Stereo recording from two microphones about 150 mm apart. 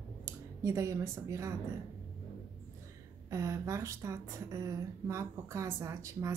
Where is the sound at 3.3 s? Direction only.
20° right (ahead or behind).